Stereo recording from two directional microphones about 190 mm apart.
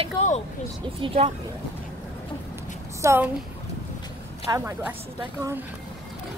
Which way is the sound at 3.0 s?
15° right (ahead or behind).